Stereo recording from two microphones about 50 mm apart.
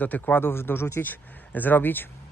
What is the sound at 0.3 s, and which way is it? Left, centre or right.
Speech, left.